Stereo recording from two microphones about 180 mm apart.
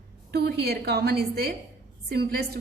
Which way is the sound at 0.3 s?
60° right (ahead or behind).